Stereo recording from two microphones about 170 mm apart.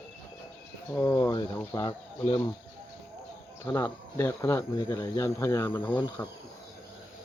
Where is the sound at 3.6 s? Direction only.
15° left (ahead or behind).